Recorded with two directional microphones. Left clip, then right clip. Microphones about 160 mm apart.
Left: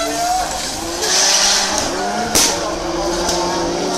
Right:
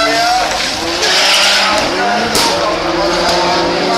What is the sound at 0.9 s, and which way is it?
Vehicle, 10° right (ahead or behind).